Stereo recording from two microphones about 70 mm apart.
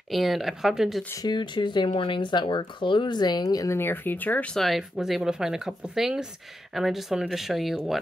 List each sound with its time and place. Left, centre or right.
0.1 s speech: centre
1.2 s speech: left
3.4 s speech: left
3.8 s speech: left
4.6 s speech: centre